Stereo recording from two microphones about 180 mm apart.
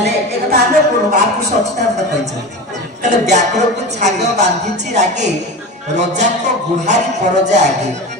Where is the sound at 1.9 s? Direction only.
40° right (ahead or behind).